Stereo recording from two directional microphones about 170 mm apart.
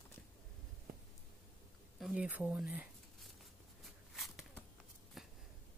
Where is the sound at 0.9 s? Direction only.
60° right (ahead or behind).